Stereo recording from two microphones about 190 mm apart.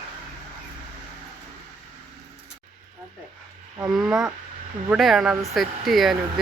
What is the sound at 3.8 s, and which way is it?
Speech, centre (ahead or behind).